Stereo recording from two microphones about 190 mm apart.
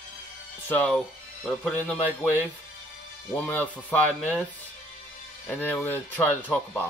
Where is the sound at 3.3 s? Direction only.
10° left (ahead or behind).